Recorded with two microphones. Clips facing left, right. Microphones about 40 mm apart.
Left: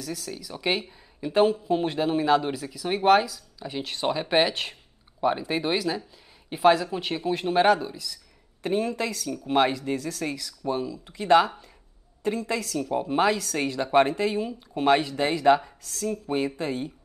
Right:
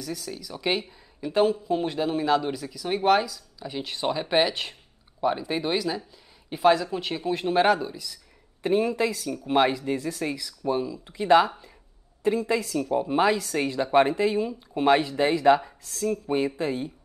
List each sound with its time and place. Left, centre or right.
0.0 s speech: centre
9.5 s speech: centre
9.9 s speech: centre
11.1 s speech: centre
12.9 s speech: centre